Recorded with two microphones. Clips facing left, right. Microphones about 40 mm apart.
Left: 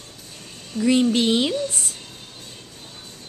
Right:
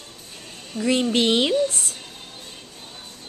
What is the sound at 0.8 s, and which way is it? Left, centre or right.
Speech, centre.